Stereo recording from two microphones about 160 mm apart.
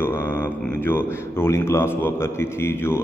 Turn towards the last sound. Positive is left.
turn(degrees=15)  # may be behind; listen again after turning